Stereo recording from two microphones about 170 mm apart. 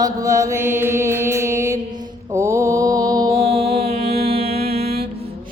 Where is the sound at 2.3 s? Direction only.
15° right (ahead or behind).